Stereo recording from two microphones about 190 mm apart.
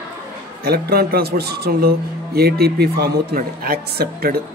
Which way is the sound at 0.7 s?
55° right (ahead or behind).